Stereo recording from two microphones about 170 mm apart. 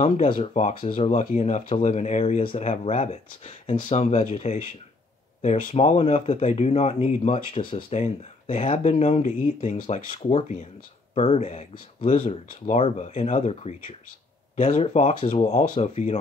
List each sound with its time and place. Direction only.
0.4 s speech: 40° left (ahead or behind)